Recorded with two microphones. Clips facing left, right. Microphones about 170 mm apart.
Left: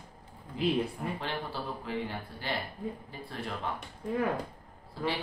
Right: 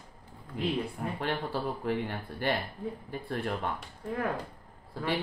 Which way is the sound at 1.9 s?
55° right (ahead or behind).